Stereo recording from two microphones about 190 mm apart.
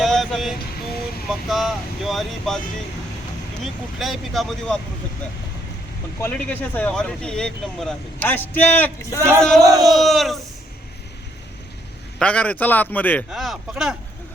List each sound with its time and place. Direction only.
0.0 s vehicle: centre (ahead or behind)
1.3 s speech: centre (ahead or behind)
3.6 s speech: centre (ahead or behind)
6.1 s speech: 10° left (ahead or behind)
9.6 s speech: 20° right (ahead or behind)
10.0 s speech: centre (ahead or behind)
12.2 s speech: 5° left (ahead or behind)